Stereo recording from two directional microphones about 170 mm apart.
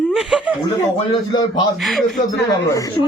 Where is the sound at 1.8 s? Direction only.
Centre (ahead or behind).